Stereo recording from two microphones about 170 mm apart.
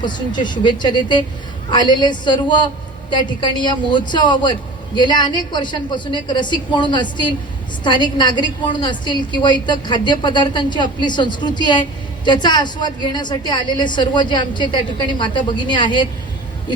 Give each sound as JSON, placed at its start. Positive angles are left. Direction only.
{"t": 0.0, "sound": "a woman's voice", "side_deg": 25}